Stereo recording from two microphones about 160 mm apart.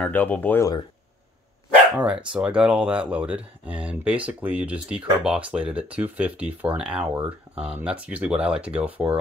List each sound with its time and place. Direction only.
0.0 s speech: 10° left (ahead or behind)
2.0 s speech: 5° right (ahead or behind)